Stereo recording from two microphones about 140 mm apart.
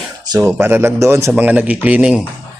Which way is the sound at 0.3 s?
15° right (ahead or behind).